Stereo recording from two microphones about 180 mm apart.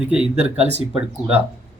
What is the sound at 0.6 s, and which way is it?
Speech, 35° right (ahead or behind).